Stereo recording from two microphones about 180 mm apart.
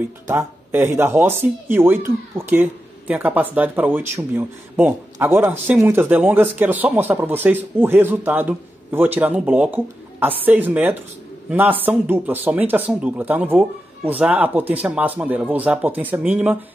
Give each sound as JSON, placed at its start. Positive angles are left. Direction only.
{"t": 0.0, "sound": "a man's voice", "side_deg": -15}